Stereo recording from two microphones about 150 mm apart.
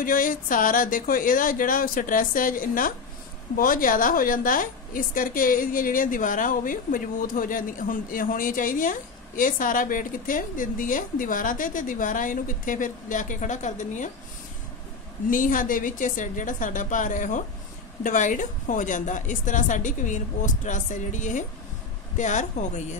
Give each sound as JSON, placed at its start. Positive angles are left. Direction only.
{"t": 0.0, "sound": "a woman's voice", "side_deg": 65}
{"t": 15.2, "sound": "a woman's voice", "side_deg": 65}